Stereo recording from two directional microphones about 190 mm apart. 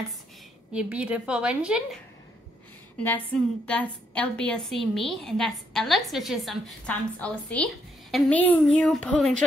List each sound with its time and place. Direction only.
0.7 s a woman's voice: 5° right (ahead or behind)
3.0 s a woman's voice: 10° left (ahead or behind)